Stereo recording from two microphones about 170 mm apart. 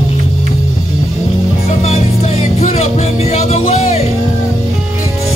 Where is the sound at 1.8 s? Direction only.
40° left (ahead or behind).